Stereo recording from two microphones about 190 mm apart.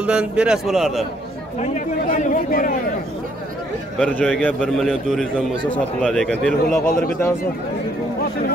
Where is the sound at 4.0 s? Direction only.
5° left (ahead or behind).